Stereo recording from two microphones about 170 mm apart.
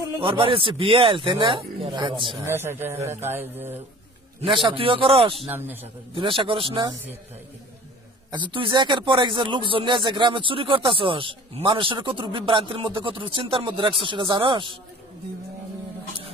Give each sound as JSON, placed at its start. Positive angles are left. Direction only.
{"t": 0.2, "sound": "a man's voice", "side_deg": -30}
{"t": 2.4, "sound": "speech", "side_deg": -15}
{"t": 4.6, "sound": "a man's voice", "side_deg": -30}
{"t": 5.5, "sound": "speech", "side_deg": -10}
{"t": 5.8, "sound": "a man's voice", "side_deg": -30}
{"t": 8.3, "sound": "speech", "side_deg": -25}